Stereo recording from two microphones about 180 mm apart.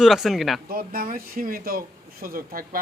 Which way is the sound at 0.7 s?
50° right (ahead or behind).